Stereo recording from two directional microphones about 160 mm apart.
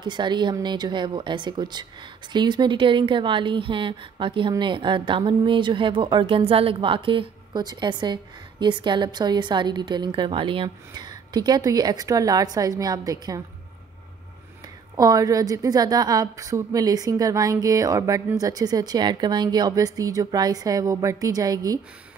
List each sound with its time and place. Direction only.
0.0 s speech: 30° right (ahead or behind)
15.0 s speech: 20° right (ahead or behind)